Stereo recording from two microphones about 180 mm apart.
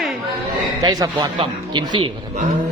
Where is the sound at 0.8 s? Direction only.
20° right (ahead or behind).